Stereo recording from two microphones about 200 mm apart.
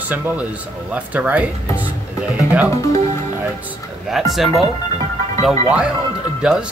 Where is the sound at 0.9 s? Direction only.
5° right (ahead or behind).